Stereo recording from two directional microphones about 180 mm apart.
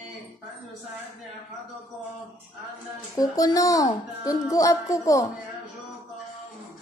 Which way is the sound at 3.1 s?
20° left (ahead or behind).